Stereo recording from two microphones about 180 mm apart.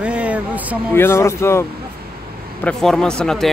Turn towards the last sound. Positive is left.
turn(degrees=5)  # may be behind; listen again after turning